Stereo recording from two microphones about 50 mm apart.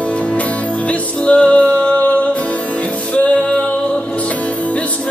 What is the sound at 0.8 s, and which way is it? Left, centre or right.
Music, left.